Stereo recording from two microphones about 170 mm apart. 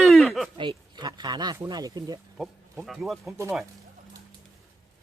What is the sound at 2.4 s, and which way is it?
Speech, centre (ahead or behind).